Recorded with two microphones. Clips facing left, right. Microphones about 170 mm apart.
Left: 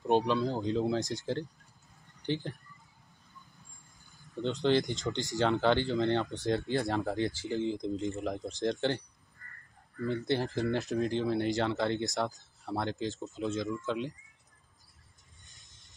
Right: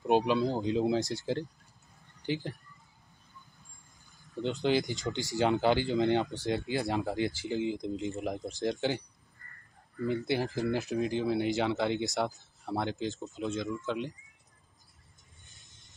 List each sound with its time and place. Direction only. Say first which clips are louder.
0.0 s speech: right 1 dB; 15° right (ahead or behind)
4.4 s speech: left 1 dB; 5° right (ahead or behind)
6.3 s speech: left 1 dB; centre (ahead or behind)
7.4 s speech: even; 15° right (ahead or behind)
7.7 s speech: left 1 dB; 5° right (ahead or behind)
10.0 s speech: right 1 dB; 10° right (ahead or behind)
15.5 s music: right 2 dB; centre (ahead or behind)